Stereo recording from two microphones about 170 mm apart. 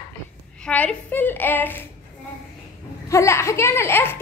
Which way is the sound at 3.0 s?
15° left (ahead or behind).